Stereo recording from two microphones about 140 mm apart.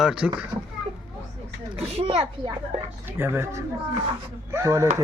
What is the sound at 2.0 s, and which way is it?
Speech, 45° right (ahead or behind).